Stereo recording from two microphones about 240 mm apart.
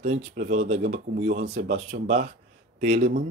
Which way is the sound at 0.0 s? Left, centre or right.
Right.